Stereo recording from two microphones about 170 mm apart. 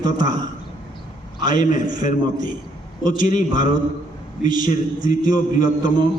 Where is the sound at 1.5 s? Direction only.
50° left (ahead or behind).